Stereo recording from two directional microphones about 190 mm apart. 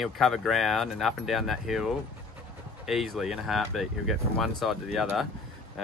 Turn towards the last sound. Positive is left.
turn(degrees=0)  # may be behind; listen again after turning